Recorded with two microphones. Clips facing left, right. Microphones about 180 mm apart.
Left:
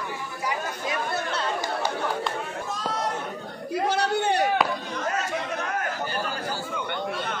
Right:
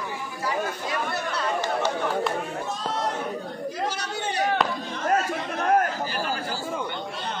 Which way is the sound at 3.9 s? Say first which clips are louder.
Left 7 dB; 60° left (ahead or behind).